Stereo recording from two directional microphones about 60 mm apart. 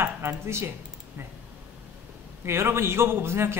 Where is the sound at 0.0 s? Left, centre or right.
Right.